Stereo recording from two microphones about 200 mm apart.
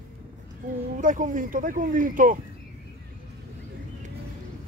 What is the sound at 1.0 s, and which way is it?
Speech, 40° right (ahead or behind).